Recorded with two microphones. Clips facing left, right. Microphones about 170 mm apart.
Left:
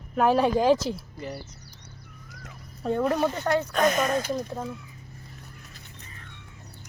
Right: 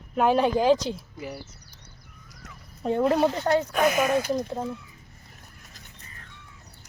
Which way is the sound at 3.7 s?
10° right (ahead or behind).